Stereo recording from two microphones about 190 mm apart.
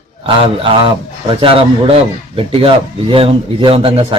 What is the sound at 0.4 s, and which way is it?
Speech, 30° right (ahead or behind).